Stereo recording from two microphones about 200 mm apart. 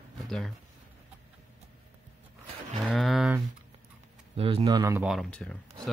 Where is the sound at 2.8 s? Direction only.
Centre (ahead or behind).